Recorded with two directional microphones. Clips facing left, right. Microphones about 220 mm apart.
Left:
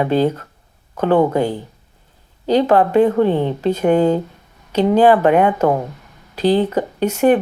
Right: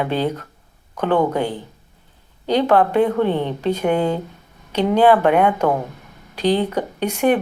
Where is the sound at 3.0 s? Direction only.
40° left (ahead or behind).